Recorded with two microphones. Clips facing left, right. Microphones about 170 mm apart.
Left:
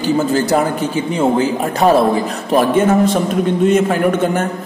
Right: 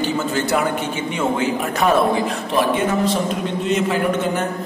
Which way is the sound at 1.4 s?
35° left (ahead or behind).